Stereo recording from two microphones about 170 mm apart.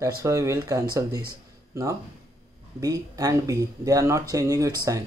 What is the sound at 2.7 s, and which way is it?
Speech, 20° right (ahead or behind).